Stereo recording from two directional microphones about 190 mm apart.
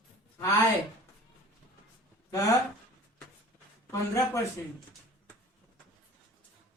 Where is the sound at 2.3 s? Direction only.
20° left (ahead or behind).